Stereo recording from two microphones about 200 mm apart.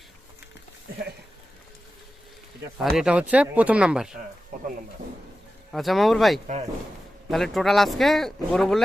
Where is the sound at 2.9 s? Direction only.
5° right (ahead or behind).